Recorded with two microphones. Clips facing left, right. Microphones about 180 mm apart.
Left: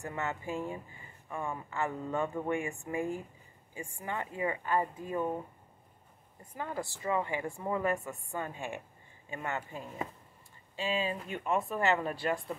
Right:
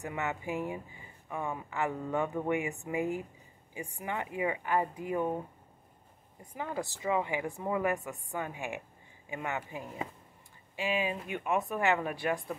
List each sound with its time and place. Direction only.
0.0 s speech: 15° right (ahead or behind)
6.5 s speech: 15° right (ahead or behind)